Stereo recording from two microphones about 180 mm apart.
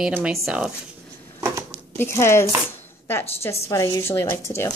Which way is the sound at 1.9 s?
15° left (ahead or behind).